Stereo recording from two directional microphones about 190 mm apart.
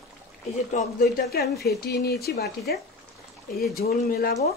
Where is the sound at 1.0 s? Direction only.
55° left (ahead or behind).